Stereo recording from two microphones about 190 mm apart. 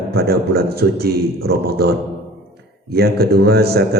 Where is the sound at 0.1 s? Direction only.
55° right (ahead or behind).